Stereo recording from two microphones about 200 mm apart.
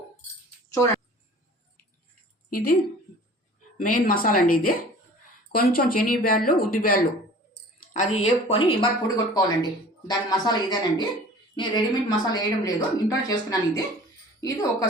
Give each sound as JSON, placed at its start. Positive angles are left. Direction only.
{"t": 2.5, "sound": "a woman's voice", "side_deg": 50}
{"t": 3.8, "sound": "speech", "side_deg": 40}
{"t": 7.9, "sound": "a woman's voice", "side_deg": 35}